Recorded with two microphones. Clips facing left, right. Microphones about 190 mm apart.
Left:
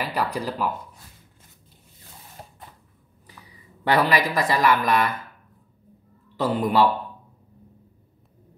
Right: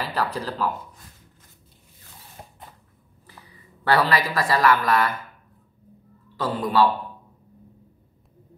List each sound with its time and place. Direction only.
0.0 s speech: 15° left (ahead or behind)
3.8 s speech: 15° left (ahead or behind)
6.4 s speech: 20° left (ahead or behind)